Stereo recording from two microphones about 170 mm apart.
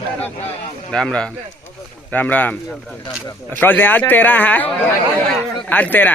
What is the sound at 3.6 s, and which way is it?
Speech, 10° left (ahead or behind).